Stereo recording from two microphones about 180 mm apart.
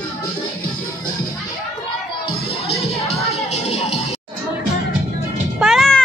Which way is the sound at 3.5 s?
35° left (ahead or behind).